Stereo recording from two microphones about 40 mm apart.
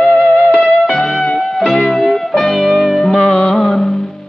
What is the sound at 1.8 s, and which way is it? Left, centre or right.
Music, centre.